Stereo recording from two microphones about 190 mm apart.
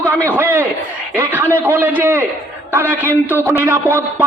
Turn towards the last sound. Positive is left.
turn(degrees=-10)  # may be behind; listen again after turning